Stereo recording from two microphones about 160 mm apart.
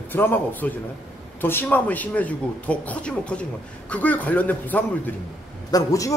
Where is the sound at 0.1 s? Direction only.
10° left (ahead or behind).